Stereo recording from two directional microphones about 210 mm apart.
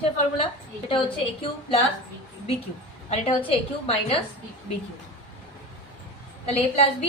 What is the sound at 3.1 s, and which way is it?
A woman's voice, 30° left (ahead or behind).